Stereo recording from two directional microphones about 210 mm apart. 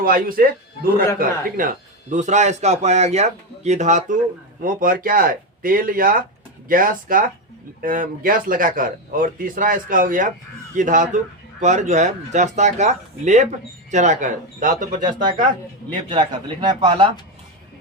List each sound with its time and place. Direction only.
0.0 s a man's voice: 45° right (ahead or behind)
15.0 s speech: 20° right (ahead or behind)